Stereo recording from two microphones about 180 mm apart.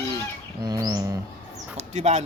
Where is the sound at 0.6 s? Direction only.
20° right (ahead or behind).